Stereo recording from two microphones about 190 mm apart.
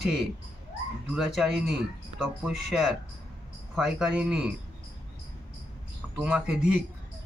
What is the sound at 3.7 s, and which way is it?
Speech, 5° right (ahead or behind).